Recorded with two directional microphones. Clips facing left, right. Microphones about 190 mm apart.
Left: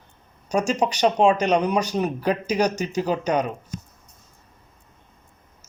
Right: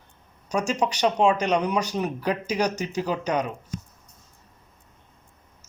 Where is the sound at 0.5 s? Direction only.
35° left (ahead or behind).